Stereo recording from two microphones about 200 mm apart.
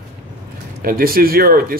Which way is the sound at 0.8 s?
45° right (ahead or behind).